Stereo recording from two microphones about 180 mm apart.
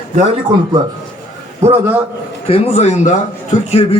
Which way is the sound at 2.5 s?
35° left (ahead or behind).